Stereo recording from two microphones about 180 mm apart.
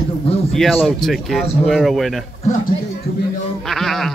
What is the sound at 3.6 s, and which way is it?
Speech, centre (ahead or behind).